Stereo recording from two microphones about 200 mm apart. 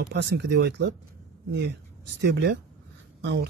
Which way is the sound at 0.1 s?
55° right (ahead or behind).